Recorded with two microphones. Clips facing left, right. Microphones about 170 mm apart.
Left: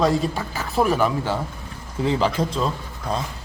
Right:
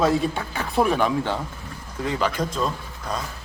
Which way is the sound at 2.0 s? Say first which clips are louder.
Left 3 dB; 30° left (ahead or behind).